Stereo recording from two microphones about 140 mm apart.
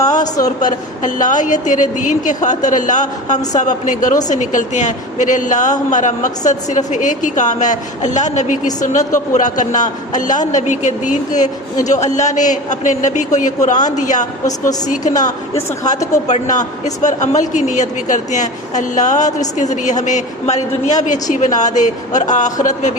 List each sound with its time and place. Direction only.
0.6 s a man's voice: 65° left (ahead or behind)
16.2 s a man's voice: 60° left (ahead or behind)